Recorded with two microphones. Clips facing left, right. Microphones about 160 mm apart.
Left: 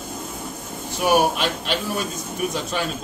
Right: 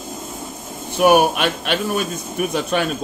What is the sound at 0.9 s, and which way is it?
A man's voice, 65° right (ahead or behind).